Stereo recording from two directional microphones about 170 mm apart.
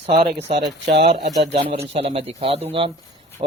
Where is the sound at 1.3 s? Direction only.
40° right (ahead or behind).